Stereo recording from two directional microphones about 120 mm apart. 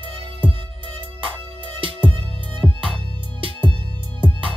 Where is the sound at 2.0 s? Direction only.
50° right (ahead or behind).